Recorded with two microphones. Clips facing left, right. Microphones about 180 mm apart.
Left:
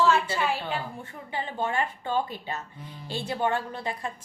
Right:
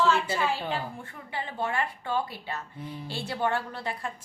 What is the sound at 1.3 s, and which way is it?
Speech, 25° left (ahead or behind).